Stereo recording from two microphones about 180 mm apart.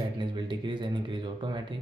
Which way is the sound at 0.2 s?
25° right (ahead or behind).